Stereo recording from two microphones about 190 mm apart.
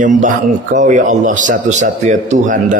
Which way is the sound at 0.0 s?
40° right (ahead or behind).